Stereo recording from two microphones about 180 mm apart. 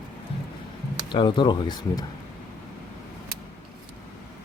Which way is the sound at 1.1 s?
25° left (ahead or behind).